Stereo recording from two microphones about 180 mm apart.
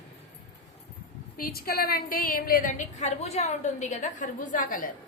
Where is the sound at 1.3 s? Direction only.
55° left (ahead or behind).